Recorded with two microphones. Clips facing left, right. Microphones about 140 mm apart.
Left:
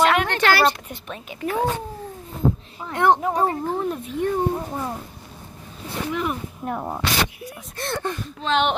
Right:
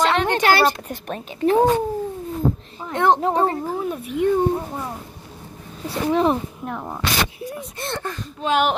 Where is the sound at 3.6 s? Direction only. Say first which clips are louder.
Even; 5° right (ahead or behind).